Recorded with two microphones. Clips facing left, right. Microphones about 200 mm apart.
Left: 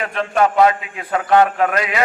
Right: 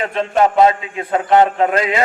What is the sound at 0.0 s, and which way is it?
A man's voice, 25° right (ahead or behind).